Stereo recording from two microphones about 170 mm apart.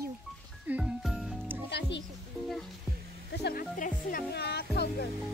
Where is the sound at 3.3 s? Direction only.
70° left (ahead or behind).